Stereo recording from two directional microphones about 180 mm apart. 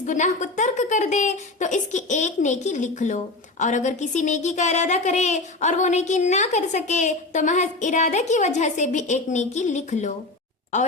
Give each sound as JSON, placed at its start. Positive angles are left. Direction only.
{"t": 0.0, "sound": "a woman's voice", "side_deg": 45}